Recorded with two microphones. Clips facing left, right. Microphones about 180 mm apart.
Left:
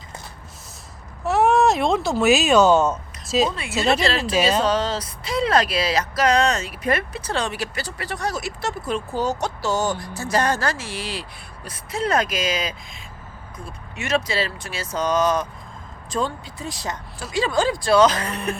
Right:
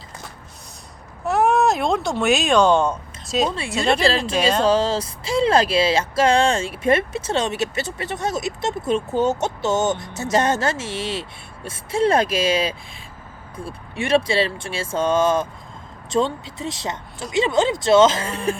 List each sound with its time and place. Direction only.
1.2 s speech: centre (ahead or behind)
4.6 s speech: 30° right (ahead or behind)